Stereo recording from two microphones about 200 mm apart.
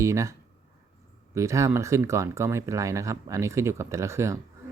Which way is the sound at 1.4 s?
15° right (ahead or behind).